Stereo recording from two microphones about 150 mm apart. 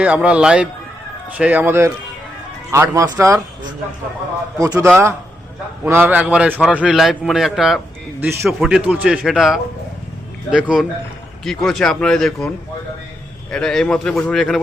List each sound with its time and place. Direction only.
0.0 s a man's voice: 10° right (ahead or behind)
4.5 s a man's voice: 20° right (ahead or behind); by 7.8 s centre (ahead or behind)
8.2 s a man's voice: 15° right (ahead or behind)
8.4 s a man's voice: centre (ahead or behind)
13.5 s a man's voice: 5° left (ahead or behind)